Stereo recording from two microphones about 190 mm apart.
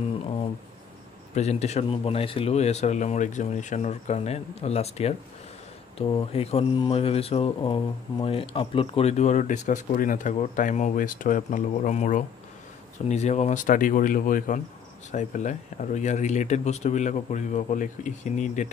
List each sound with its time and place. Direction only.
1.3 s speech: 35° left (ahead or behind)